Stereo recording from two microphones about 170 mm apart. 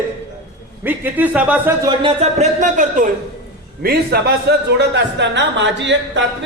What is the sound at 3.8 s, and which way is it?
A man's voice, 65° right (ahead or behind).